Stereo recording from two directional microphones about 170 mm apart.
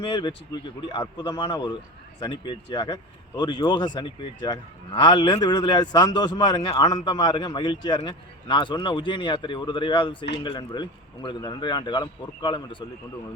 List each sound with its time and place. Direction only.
0.1 s speech: 25° left (ahead or behind)